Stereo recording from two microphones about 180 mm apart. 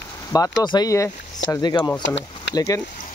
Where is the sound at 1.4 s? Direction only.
90° left.